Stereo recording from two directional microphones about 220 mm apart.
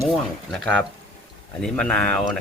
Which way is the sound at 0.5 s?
5° left (ahead or behind).